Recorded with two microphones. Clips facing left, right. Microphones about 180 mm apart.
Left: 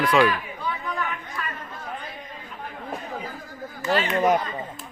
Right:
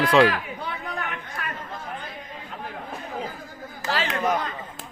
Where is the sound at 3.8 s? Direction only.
90° right.